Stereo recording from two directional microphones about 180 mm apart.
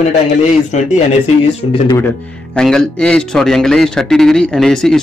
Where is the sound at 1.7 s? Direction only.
25° left (ahead or behind).